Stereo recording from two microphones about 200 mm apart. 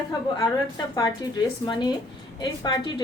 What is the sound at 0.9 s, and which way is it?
Speech, 20° left (ahead or behind).